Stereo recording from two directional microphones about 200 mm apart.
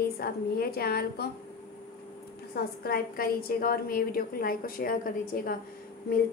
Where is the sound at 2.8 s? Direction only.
50° left (ahead or behind).